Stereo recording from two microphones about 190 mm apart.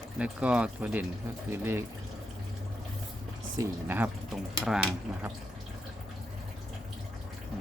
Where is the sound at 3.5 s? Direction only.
10° right (ahead or behind).